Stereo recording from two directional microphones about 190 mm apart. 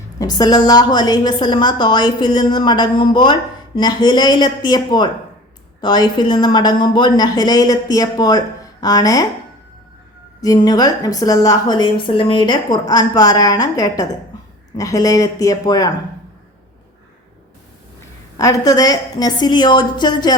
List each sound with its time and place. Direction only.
0.2 s a woman's voice: 20° left (ahead or behind)
10.4 s a woman's voice: 20° left (ahead or behind)
18.3 s a woman's voice: 20° left (ahead or behind)